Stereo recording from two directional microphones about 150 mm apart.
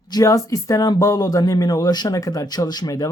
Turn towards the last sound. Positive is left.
turn(degrees=25)  # may be behind; listen again after turning